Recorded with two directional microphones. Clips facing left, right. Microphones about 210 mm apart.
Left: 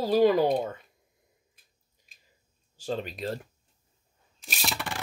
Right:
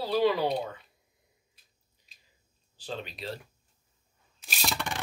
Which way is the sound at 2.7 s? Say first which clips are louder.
Left 6 dB; 45° left (ahead or behind).